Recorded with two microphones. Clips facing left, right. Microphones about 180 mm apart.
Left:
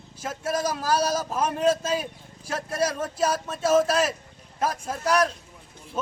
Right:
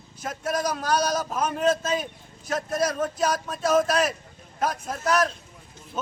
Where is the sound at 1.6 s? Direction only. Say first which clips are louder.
Even; 10° left (ahead or behind).